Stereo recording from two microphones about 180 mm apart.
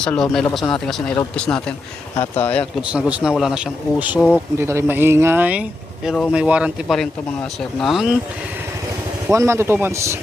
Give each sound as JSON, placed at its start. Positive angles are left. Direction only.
{"t": 0.0, "sound": "speech", "side_deg": 5}
{"t": 2.9, "sound": "speech", "side_deg": -5}
{"t": 6.1, "sound": "speech", "side_deg": 5}
{"t": 6.3, "sound": "speech", "side_deg": -5}
{"t": 9.3, "sound": "speech", "side_deg": -15}